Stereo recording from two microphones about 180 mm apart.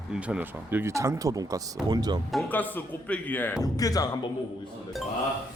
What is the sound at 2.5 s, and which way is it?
A man's voice, 10° left (ahead or behind).